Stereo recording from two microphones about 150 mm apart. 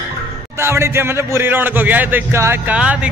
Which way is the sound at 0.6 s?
15° right (ahead or behind).